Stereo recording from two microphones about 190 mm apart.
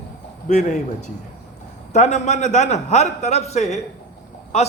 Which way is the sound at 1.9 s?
40° left (ahead or behind).